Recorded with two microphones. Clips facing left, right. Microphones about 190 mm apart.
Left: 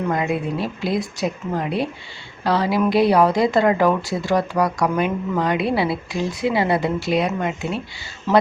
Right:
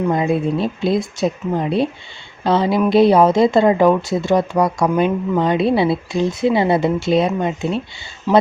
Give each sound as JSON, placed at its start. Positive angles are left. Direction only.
{"t": 0.1, "sound": "speech", "side_deg": -25}
{"t": 8.3, "sound": "speech", "side_deg": -15}